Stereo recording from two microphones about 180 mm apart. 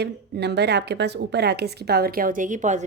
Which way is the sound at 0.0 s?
70° right (ahead or behind).